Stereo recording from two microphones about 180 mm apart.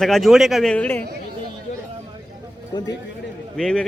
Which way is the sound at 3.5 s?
Centre (ahead or behind).